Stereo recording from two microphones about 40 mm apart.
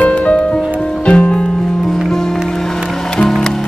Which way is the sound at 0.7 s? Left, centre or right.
Centre.